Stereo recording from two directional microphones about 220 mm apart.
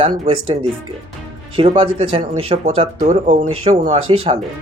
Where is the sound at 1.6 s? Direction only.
25° right (ahead or behind).